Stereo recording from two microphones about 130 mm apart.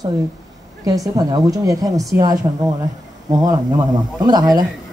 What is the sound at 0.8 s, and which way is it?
A woman's voice, 25° right (ahead or behind).